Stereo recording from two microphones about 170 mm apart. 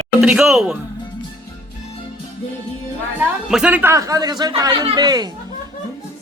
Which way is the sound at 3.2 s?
5° right (ahead or behind).